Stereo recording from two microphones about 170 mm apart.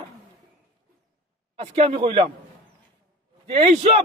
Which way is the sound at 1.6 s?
40° right (ahead or behind).